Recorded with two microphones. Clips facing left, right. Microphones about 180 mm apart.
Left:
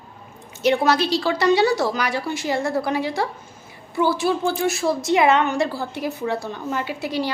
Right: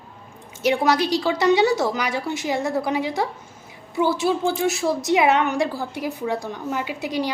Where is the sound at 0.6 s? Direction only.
10° right (ahead or behind).